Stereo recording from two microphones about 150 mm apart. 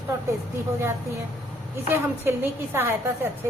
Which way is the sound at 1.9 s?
15° right (ahead or behind).